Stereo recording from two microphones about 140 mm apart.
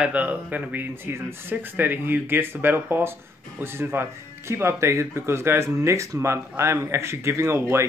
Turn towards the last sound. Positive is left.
turn(degrees=-20)  # may be behind; listen again after turning